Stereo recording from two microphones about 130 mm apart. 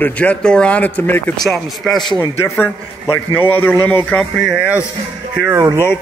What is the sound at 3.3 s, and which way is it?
Speech, 15° left (ahead or behind).